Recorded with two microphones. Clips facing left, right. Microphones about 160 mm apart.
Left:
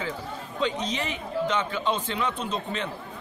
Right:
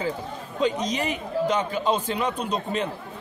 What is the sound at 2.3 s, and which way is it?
Speech, 15° right (ahead or behind).